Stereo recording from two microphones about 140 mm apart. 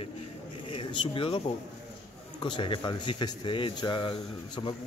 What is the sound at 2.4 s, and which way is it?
Speech, 35° left (ahead or behind).